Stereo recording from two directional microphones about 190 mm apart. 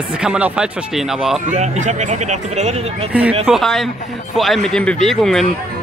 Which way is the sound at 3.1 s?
5° right (ahead or behind).